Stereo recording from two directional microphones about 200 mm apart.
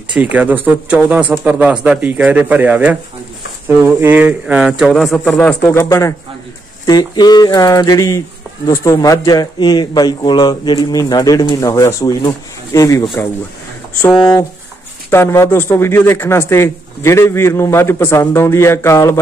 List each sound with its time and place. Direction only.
0.1 s a man's voice: 5° right (ahead or behind); by 13.3 s 15° left (ahead or behind)
14.0 s a man's voice: 5° left (ahead or behind)